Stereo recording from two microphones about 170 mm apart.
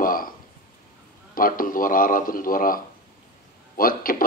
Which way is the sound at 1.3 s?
55° left (ahead or behind).